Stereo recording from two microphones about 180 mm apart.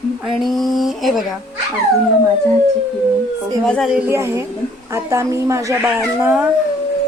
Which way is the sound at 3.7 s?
Centre (ahead or behind).